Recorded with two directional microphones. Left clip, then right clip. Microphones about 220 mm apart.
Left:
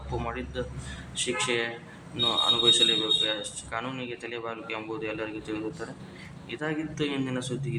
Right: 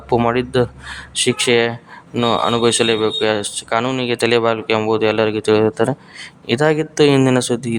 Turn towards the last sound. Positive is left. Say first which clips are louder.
# right 16 dB
turn(degrees=-55)  # may be behind; listen again after turning